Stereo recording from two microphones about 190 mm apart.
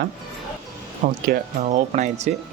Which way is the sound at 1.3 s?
40° right (ahead or behind).